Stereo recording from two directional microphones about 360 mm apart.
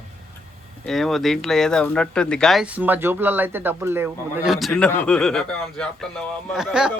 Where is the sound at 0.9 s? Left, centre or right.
Centre.